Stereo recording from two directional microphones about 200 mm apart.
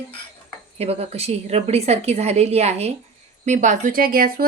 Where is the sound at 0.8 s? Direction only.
30° right (ahead or behind).